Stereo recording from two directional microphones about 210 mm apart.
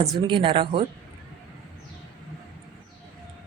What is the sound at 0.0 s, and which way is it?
Speech, 25° right (ahead or behind).